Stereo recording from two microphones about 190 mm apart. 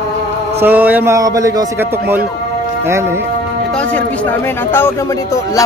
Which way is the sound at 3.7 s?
5° left (ahead or behind).